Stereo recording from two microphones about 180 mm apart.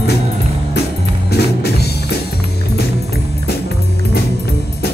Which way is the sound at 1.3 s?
65° left (ahead or behind).